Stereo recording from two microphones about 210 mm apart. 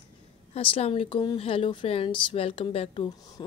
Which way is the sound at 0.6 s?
25° left (ahead or behind).